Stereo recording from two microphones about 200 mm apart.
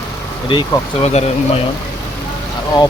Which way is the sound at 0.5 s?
25° left (ahead or behind).